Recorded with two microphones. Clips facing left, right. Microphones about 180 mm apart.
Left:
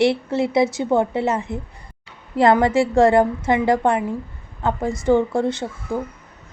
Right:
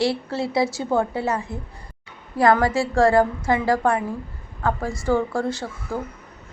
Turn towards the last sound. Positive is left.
turn(degrees=20)  # may be behind; listen again after turning